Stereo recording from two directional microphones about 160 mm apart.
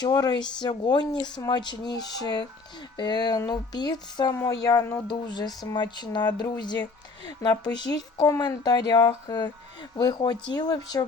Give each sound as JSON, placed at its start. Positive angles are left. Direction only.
{"t": 0.0, "sound": "speech", "side_deg": 25}
{"t": 5.0, "sound": "speech", "side_deg": 25}